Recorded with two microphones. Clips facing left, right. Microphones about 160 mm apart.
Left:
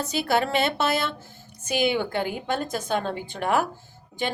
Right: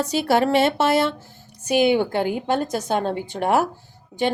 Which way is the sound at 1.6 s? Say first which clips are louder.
Right 6 dB; 55° right (ahead or behind).